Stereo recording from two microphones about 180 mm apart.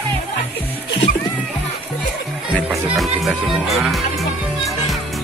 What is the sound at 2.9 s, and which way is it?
Music, centre (ahead or behind).